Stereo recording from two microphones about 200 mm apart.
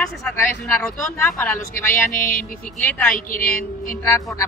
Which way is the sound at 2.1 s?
45° left (ahead or behind).